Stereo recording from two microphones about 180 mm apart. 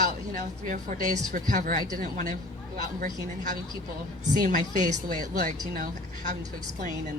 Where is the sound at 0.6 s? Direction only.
50° right (ahead or behind).